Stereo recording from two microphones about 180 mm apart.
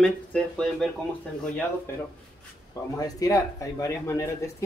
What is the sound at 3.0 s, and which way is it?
Speech, 20° left (ahead or behind).